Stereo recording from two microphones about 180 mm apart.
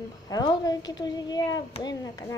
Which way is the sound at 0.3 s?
20° left (ahead or behind).